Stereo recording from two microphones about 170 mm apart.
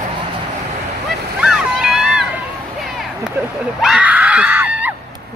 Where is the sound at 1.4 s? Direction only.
5° right (ahead or behind).